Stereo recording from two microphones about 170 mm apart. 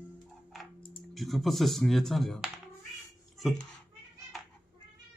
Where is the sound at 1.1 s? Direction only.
Centre (ahead or behind).